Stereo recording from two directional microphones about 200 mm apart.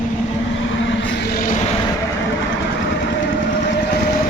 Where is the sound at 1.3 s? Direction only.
45° left (ahead or behind).